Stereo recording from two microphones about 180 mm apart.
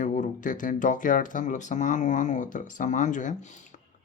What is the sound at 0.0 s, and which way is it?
Speech, 45° left (ahead or behind).